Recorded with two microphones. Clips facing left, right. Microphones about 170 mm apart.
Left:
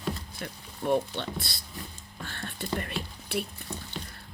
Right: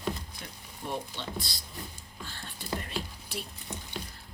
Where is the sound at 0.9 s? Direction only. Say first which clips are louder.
Left 9 dB; 60° left (ahead or behind).